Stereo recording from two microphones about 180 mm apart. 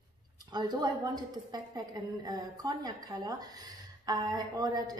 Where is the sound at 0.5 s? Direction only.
25° right (ahead or behind).